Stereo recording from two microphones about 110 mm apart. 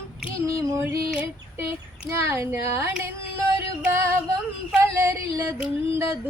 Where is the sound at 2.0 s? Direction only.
25° right (ahead or behind).